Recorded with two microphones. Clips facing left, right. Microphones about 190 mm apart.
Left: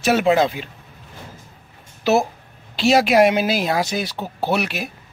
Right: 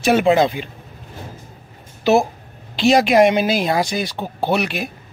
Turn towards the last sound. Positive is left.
turn(degrees=5)  # may be behind; listen again after turning